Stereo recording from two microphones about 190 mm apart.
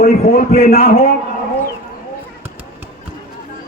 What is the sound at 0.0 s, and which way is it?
A man's voice, 55° left (ahead or behind).